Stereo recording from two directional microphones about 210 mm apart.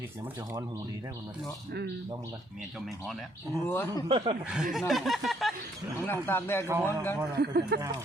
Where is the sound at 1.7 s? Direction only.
50° right (ahead or behind).